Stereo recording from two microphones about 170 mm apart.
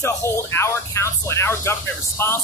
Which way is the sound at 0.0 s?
15° left (ahead or behind).